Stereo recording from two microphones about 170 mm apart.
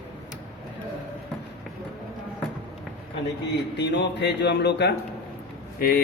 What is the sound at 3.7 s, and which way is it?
Speech, 90° left.